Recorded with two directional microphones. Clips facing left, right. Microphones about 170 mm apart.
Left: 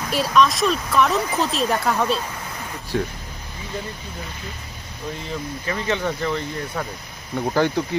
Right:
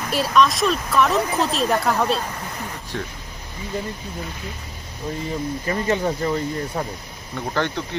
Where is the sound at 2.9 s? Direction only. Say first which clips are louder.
Left 7 dB; 10° left (ahead or behind).